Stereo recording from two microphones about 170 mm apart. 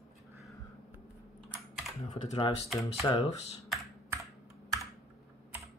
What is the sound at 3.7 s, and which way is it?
Computer keyboard, centre (ahead or behind).